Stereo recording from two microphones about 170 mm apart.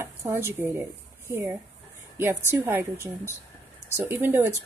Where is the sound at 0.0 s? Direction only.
15° right (ahead or behind).